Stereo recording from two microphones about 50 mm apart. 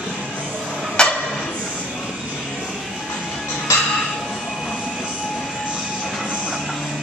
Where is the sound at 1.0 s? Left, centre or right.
Centre.